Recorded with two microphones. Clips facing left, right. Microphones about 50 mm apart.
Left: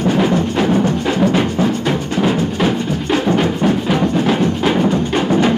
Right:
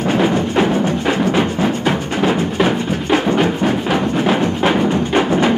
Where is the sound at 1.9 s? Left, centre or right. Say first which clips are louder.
Even; right.